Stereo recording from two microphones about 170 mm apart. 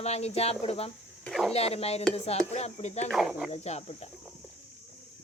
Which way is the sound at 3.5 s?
40° left (ahead or behind).